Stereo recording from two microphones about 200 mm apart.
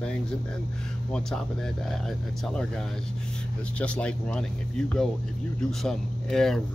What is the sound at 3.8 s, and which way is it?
Speech, 5° left (ahead or behind).